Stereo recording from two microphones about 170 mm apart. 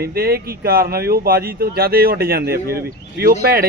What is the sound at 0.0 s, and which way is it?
Speech, 65° right (ahead or behind).